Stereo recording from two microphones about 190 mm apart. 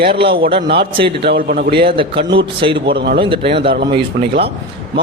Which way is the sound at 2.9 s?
60° right (ahead or behind).